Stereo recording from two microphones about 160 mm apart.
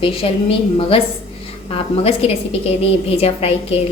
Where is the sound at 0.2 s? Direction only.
35° left (ahead or behind).